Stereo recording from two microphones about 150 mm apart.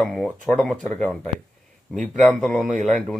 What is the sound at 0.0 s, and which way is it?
Speech, centre (ahead or behind).